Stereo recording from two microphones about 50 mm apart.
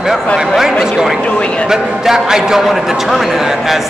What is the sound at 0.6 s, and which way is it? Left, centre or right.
A man's voice, centre.